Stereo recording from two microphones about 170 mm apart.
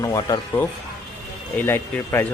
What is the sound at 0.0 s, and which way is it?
Speech, 20° left (ahead or behind).